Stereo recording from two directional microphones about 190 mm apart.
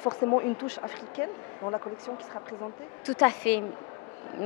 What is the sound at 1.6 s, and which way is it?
Speech, 15° left (ahead or behind).